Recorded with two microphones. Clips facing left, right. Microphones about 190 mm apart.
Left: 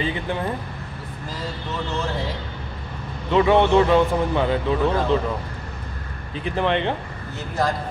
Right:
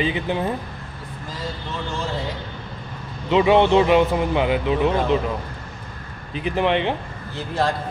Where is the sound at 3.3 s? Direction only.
20° right (ahead or behind).